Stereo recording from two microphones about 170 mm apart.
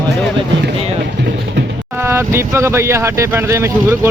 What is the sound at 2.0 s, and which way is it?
Speech, 15° right (ahead or behind).